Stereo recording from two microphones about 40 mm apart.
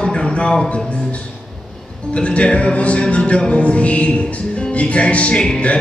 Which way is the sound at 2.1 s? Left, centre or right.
Left.